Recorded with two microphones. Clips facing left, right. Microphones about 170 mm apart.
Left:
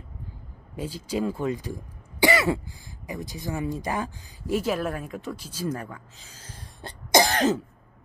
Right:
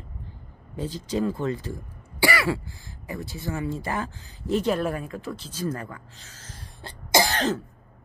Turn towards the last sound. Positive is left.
turn(degrees=15)  # may be behind; listen again after turning